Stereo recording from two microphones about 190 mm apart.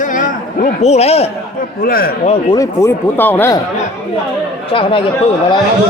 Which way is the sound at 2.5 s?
15° left (ahead or behind).